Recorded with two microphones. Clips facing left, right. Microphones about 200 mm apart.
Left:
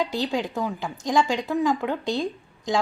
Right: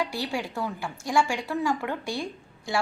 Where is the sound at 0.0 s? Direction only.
20° left (ahead or behind).